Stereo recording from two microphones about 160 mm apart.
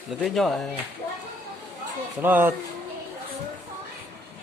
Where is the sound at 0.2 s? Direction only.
Centre (ahead or behind).